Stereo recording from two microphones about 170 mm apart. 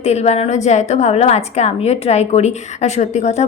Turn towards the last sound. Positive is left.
turn(degrees=40)  # may be behind; listen again after turning